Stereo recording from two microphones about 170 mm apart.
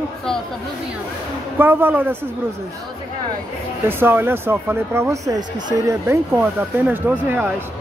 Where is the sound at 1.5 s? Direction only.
10° right (ahead or behind).